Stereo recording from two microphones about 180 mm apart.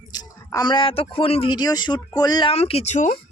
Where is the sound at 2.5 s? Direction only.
35° left (ahead or behind).